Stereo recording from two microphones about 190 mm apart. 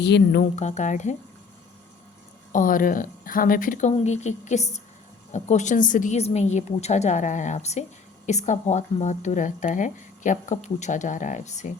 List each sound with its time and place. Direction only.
0.0 s a woman's voice: 60° left (ahead or behind)
0.5 s speech: 40° left (ahead or behind)
2.5 s speech: 45° left (ahead or behind)